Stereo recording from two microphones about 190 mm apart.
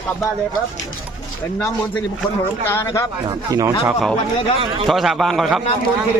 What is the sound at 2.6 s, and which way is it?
Speech, 15° left (ahead or behind).